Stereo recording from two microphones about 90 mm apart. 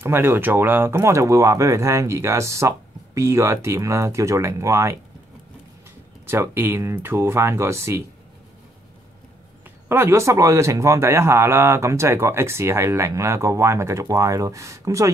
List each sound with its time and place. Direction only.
0.0 s a man's voice: 30° right (ahead or behind)
6.2 s speech: 25° right (ahead or behind)
9.8 s a man's voice: 25° right (ahead or behind)